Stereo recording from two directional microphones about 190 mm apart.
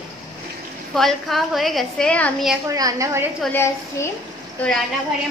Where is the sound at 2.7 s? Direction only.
15° right (ahead or behind).